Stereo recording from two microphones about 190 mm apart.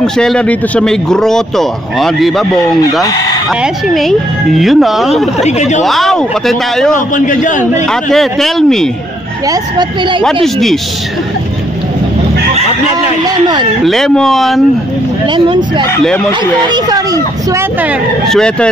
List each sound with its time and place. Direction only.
0.0 s speech: 5° left (ahead or behind)
5.4 s speech: 35° left (ahead or behind)
5.9 s speech: centre (ahead or behind)
7.2 s a man's voice: 40° left (ahead or behind)
7.9 s speech: centre (ahead or behind)
9.5 s speech: 25° right (ahead or behind)
10.2 s speech: centre (ahead or behind)
13.8 s speech: centre (ahead or behind)
15.2 s speech: 25° right (ahead or behind)
16.6 s speech: 20° right (ahead or behind)
18.3 s speech: 5° left (ahead or behind)